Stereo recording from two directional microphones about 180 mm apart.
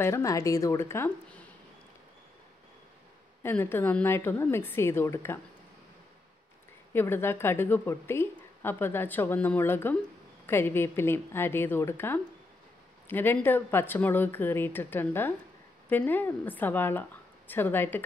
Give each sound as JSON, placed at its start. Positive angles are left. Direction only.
{"t": 0.0, "sound": "speech", "side_deg": 15}
{"t": 3.4, "sound": "speech", "side_deg": 10}
{"t": 6.9, "sound": "speech", "side_deg": 10}